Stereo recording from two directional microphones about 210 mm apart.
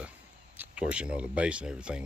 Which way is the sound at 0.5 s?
5° right (ahead or behind).